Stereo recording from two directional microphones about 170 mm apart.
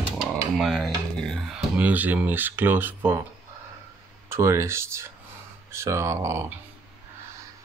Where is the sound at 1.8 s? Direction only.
10° right (ahead or behind).